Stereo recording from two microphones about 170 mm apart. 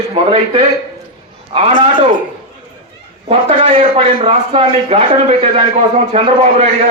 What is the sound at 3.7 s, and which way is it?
A man's voice, 35° right (ahead or behind).